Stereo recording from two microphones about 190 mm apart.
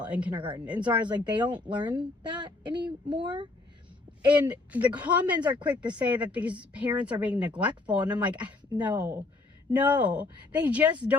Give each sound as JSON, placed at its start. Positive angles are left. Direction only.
{"t": 0.0, "sound": "speech", "side_deg": -5}
{"t": 1.0, "sound": "speech", "side_deg": -20}
{"t": 4.4, "sound": "speech", "side_deg": -5}